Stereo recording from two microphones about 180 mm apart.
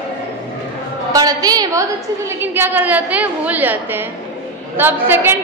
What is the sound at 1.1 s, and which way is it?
Speech, 20° right (ahead or behind).